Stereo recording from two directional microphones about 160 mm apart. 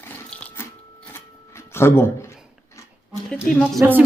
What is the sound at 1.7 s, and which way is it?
Speech, 15° left (ahead or behind).